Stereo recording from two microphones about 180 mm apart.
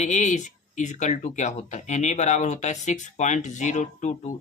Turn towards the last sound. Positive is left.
turn(degrees=40)  # may be behind; listen again after turning